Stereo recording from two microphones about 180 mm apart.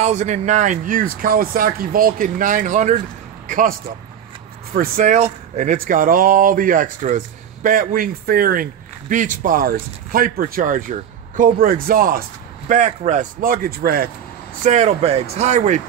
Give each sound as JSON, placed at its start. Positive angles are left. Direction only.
{"t": 0.0, "sound": "speech", "side_deg": -40}
{"t": 4.7, "sound": "speech", "side_deg": -45}
{"t": 14.6, "sound": "speech", "side_deg": -40}